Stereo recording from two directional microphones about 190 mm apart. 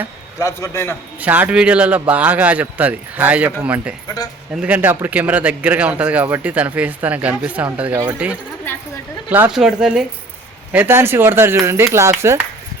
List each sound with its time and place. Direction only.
0.3 s a man's voice: 15° left (ahead or behind)
1.2 s speech: 10° right (ahead or behind)